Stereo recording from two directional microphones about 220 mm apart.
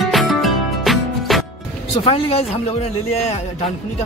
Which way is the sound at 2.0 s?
25° left (ahead or behind).